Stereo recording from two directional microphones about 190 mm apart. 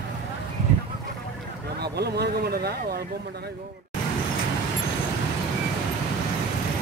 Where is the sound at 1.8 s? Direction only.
60° right (ahead or behind).